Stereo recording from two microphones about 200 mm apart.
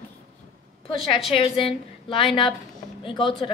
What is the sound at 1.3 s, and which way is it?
A woman's voice, 25° left (ahead or behind).